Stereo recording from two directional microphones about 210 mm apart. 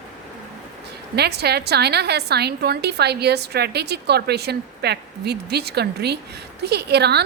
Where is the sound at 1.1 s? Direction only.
50° right (ahead or behind).